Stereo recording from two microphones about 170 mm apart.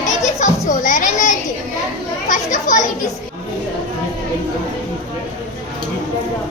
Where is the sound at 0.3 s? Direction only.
45° left (ahead or behind).